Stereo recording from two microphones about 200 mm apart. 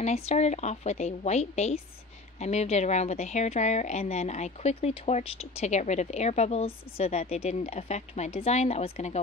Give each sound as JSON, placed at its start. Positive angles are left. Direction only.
{"t": 0.0, "sound": "a woman's voice", "side_deg": 35}